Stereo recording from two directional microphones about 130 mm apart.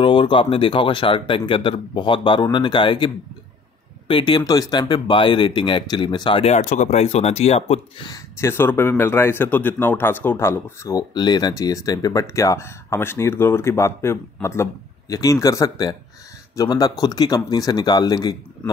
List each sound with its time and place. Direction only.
0.0 s speech: 40° left (ahead or behind)
4.1 s speech: 35° left (ahead or behind)
6.4 s speech: 65° left (ahead or behind)
8.4 s speech: 20° left (ahead or behind)